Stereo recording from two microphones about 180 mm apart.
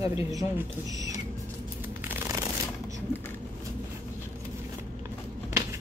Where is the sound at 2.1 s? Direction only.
15° right (ahead or behind).